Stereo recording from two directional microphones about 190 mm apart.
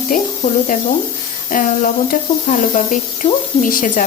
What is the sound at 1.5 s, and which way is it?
Speech, 45° left (ahead or behind).